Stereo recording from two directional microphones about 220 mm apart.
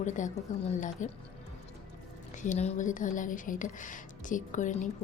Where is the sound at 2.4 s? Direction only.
30° left (ahead or behind).